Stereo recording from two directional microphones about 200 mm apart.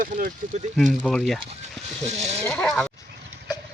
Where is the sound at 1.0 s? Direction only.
5° left (ahead or behind).